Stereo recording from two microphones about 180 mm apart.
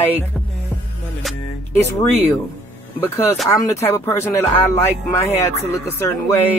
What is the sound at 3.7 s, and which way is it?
Speech, 15° left (ahead or behind).